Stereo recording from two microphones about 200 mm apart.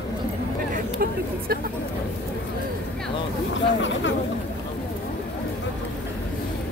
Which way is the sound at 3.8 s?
70° left (ahead or behind).